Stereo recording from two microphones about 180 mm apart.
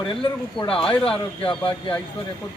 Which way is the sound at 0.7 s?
30° left (ahead or behind).